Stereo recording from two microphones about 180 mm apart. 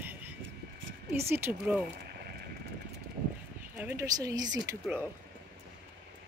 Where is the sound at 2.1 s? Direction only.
60° right (ahead or behind).